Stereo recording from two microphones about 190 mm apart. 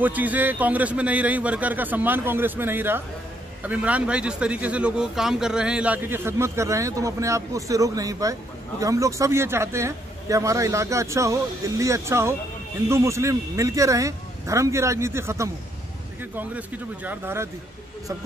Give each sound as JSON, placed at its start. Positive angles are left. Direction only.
{"t": 0.0, "sound": "speech", "side_deg": -10}